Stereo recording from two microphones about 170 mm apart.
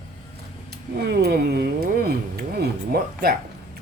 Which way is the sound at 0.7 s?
70° right (ahead or behind).